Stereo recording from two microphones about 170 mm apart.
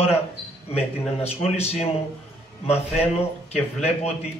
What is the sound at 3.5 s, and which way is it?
Speech, 40° left (ahead or behind).